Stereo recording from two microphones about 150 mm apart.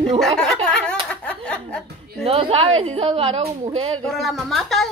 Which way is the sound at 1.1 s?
10° left (ahead or behind).